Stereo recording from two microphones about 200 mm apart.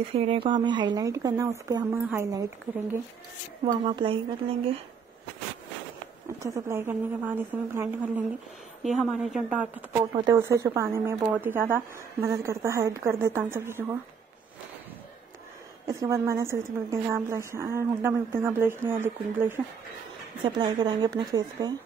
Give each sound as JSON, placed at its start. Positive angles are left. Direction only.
{"t": 0.1, "sound": "speech", "side_deg": -30}
{"t": 3.6, "sound": "speech", "side_deg": -25}
{"t": 6.4, "sound": "speech", "side_deg": -15}
{"t": 8.8, "sound": "speech", "side_deg": 0}
{"t": 10.1, "sound": "speech", "side_deg": -20}
{"t": 15.9, "sound": "speech", "side_deg": -15}
{"t": 20.4, "sound": "speech", "side_deg": -20}